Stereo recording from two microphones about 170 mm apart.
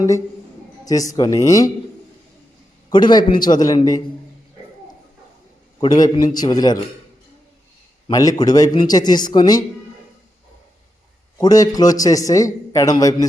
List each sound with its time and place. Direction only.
0.9 s a man's voice: 20° left (ahead or behind)
2.9 s a man's voice: 25° left (ahead or behind)
5.8 s a man's voice: 25° left (ahead or behind)
8.1 s a man's voice: 20° left (ahead or behind)
11.3 s a man's voice: 20° left (ahead or behind)